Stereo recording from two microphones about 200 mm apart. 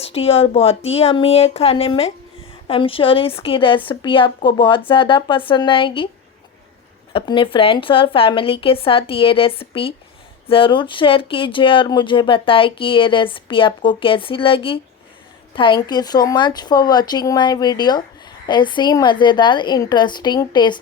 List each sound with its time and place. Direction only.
0.0 s speech: 30° left (ahead or behind)
7.1 s speech: 25° left (ahead or behind)